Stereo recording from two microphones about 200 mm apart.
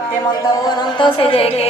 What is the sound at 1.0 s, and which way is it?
Speech, 25° left (ahead or behind).